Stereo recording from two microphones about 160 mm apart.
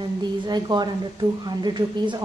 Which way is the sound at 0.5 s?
25° right (ahead or behind).